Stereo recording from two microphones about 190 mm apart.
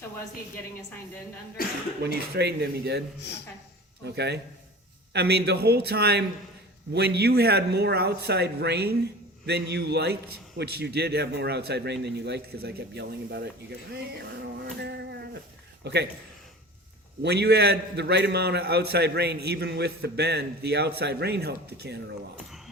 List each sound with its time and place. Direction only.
2.0 s a man's voice: 60° right (ahead or behind)
3.2 s speech: 65° left (ahead or behind)
4.0 s a man's voice: 60° right (ahead or behind)
17.2 s a man's voice: 60° right (ahead or behind)